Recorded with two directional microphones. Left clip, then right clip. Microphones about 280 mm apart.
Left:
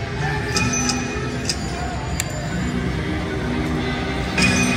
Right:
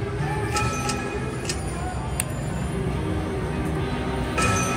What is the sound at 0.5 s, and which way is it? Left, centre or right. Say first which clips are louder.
Music: left 5 dB; right.